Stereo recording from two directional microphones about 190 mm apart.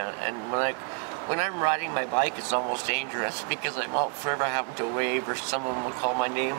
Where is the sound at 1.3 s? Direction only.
15° right (ahead or behind).